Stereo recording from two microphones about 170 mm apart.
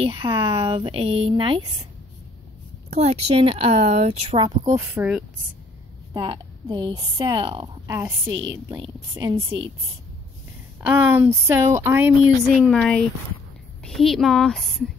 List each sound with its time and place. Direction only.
0.0 s speech: 30° right (ahead or behind)
2.9 s speech: 40° right (ahead or behind)
4.7 s speech: 10° right (ahead or behind)
6.1 s a woman's voice: 25° right (ahead or behind)
9.3 s speech: 30° right (ahead or behind)
11.0 s speech: 15° right (ahead or behind)
12.5 s a woman's voice: centre (ahead or behind)